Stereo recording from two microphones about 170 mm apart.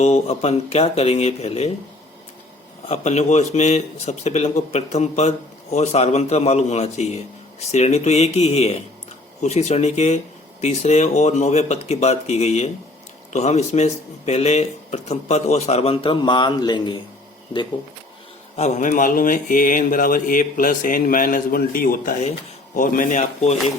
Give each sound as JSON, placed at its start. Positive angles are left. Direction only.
{"t": 0.0, "sound": "speech", "side_deg": 40}
{"t": 2.8, "sound": "speech", "side_deg": 40}
{"t": 18.5, "sound": "speech", "side_deg": 40}